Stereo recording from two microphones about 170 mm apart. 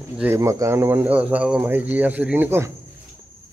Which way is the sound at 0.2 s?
15° right (ahead or behind).